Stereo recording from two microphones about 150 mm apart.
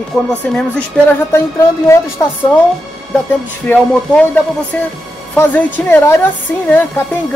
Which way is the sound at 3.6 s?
10° left (ahead or behind).